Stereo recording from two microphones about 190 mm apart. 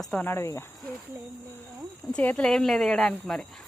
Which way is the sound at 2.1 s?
5° left (ahead or behind).